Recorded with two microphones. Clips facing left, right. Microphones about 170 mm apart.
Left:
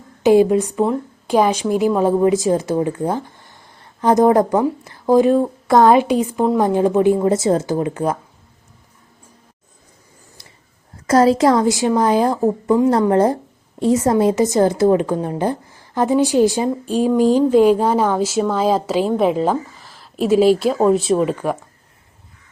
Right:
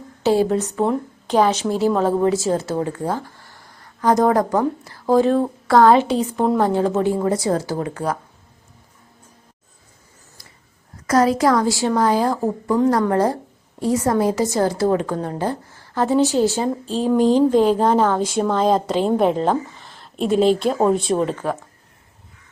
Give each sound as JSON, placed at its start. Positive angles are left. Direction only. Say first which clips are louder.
{"t": 0.2, "sound": "a woman's voice", "louder": "left 5 dB", "side_deg": 15}
{"t": 11.0, "sound": "a woman's voice", "louder": "left 3 dB", "side_deg": 30}
{"t": 21.2, "sound": "a woman's voice", "louder": "left 3 dB", "side_deg": 10}